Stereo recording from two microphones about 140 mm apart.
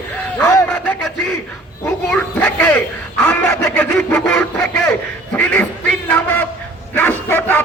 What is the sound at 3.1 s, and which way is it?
Chicken, 10° left (ahead or behind).